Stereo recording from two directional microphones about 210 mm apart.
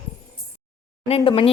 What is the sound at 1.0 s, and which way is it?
Speech, 25° left (ahead or behind).